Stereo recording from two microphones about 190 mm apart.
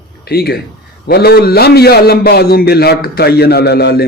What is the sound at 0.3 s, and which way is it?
A man's voice, 55° left (ahead or behind).